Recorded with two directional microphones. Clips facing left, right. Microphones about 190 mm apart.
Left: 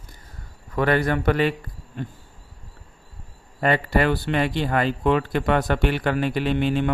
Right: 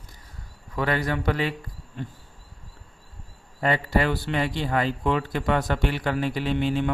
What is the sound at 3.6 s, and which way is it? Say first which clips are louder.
Speech: left 3 dB; 60° left (ahead or behind).